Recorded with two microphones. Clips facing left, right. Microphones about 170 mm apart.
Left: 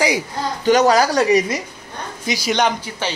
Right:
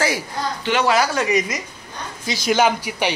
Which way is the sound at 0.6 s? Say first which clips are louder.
Left 5 dB; 40° left (ahead or behind).